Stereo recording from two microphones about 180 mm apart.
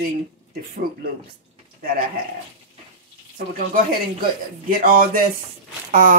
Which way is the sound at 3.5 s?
55° right (ahead or behind).